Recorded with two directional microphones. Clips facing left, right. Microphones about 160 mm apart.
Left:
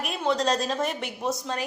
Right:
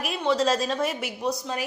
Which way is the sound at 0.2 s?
Centre (ahead or behind).